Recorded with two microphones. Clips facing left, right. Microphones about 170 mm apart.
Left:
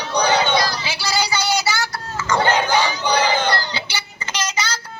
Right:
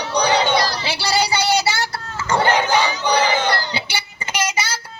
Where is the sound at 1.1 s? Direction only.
30° right (ahead or behind).